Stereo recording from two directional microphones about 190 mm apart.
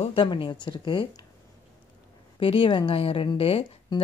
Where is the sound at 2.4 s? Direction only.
30° left (ahead or behind).